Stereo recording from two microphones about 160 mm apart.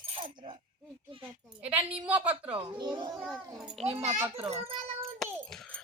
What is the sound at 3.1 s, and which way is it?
Speech, 5° right (ahead or behind).